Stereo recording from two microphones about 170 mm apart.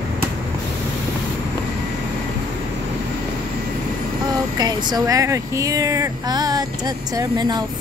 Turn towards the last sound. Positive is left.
turn(degrees=-25)  # may be behind; listen again after turning